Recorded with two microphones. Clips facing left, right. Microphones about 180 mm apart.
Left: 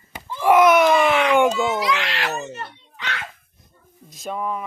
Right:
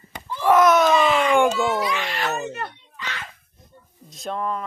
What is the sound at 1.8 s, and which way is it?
Speech, 90° left.